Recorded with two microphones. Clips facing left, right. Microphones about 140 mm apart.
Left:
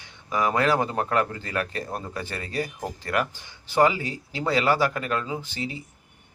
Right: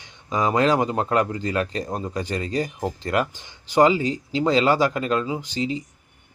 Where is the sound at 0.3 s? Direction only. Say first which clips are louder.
Right 3 dB; 20° right (ahead or behind).